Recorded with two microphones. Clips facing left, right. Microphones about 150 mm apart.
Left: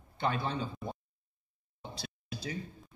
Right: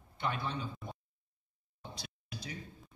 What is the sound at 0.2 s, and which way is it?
Speech, 30° left (ahead or behind).